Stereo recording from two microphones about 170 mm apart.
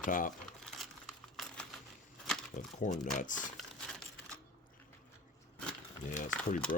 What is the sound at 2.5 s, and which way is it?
Speech, 45° left (ahead or behind).